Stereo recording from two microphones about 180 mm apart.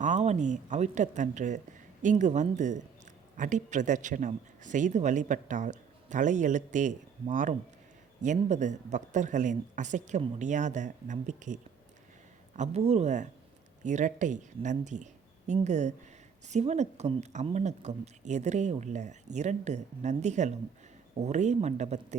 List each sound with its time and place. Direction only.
0.0 s a woman's voice: 40° right (ahead or behind)